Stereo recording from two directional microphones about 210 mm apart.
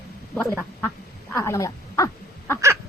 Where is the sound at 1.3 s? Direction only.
15° left (ahead or behind).